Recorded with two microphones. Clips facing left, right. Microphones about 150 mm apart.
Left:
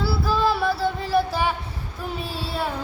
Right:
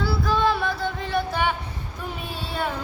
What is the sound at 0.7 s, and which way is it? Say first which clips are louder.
Music: left 4 dB; 35° left (ahead or behind).